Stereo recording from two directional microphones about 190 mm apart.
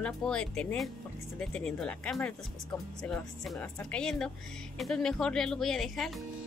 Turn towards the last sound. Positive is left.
turn(degrees=0)  # may be behind; listen again after turning